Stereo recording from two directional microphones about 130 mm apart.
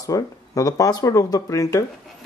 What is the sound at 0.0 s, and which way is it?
Speech, 25° left (ahead or behind).